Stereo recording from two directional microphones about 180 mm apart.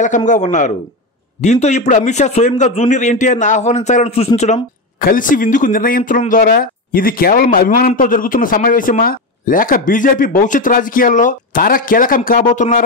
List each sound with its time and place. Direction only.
0.3 s a man's voice: 40° left (ahead or behind)